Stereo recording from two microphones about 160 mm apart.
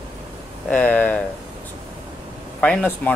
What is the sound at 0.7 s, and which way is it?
Speech, 10° left (ahead or behind).